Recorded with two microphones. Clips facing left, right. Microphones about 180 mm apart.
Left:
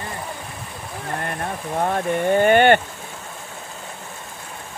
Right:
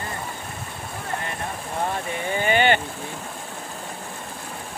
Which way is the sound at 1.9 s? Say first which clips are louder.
Left 8 dB; 55° left (ahead or behind).